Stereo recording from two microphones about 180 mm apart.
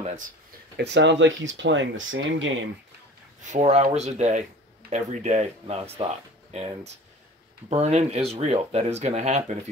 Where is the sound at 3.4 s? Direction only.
40° right (ahead or behind).